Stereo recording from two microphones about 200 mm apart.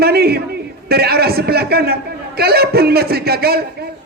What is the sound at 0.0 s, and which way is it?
A man's voice, 50° right (ahead or behind).